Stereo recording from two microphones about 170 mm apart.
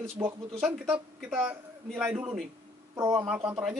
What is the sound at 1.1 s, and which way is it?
Speech, 5° right (ahead or behind).